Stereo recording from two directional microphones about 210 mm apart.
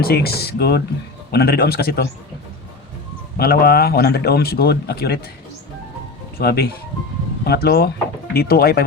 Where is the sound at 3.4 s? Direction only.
45° left (ahead or behind).